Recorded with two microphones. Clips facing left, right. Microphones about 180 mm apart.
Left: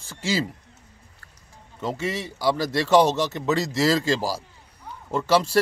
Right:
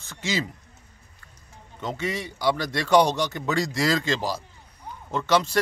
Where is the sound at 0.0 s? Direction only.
30° left (ahead or behind).